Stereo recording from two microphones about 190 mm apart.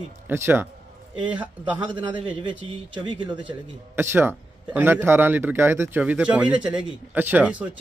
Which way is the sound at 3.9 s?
10° right (ahead or behind).